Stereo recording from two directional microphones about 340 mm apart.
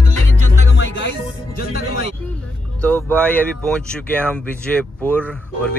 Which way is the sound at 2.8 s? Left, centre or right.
Centre.